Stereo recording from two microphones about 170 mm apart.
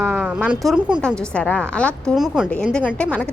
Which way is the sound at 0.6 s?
5° right (ahead or behind).